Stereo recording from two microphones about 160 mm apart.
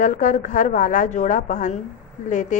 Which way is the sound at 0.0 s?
50° left (ahead or behind).